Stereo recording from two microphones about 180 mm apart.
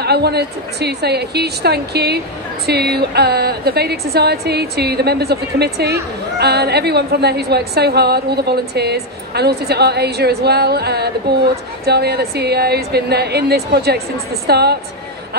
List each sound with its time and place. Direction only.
0.0 s a woman's voice: 65° right (ahead or behind)